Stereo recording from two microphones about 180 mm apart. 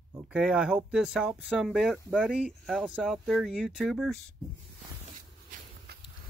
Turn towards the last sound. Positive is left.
turn(degrees=-65)  # may be behind; listen again after turning